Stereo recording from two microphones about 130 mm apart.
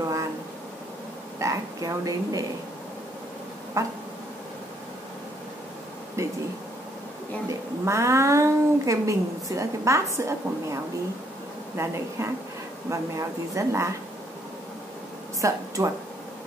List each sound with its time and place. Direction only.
1.4 s speech: 25° right (ahead or behind)
3.8 s speech: 25° right (ahead or behind)
6.2 s speech: 20° right (ahead or behind)
7.4 s speech: 25° right (ahead or behind)
15.4 s speech: 25° right (ahead or behind)